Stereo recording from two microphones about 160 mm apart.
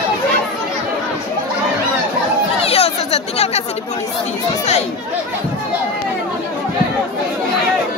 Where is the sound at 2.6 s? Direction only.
40° left (ahead or behind).